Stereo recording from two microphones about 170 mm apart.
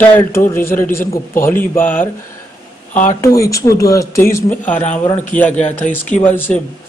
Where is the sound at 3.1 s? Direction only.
20° left (ahead or behind).